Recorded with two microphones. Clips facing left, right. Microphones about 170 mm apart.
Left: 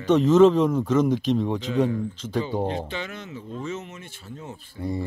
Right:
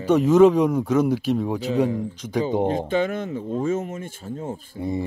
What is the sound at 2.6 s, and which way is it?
Speech, 45° right (ahead or behind).